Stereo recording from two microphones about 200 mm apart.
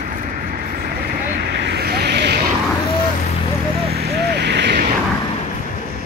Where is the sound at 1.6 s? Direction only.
55° right (ahead or behind).